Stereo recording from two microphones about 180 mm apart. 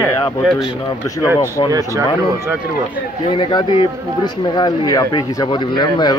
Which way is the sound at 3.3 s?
25° left (ahead or behind).